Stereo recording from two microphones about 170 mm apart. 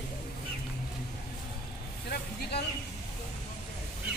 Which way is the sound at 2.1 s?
70° left (ahead or behind).